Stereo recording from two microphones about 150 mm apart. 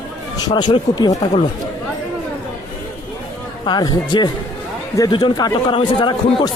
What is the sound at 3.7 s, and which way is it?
Speech, 30° left (ahead or behind).